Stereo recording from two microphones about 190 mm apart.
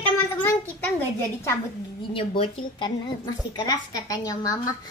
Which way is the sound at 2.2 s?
25° left (ahead or behind).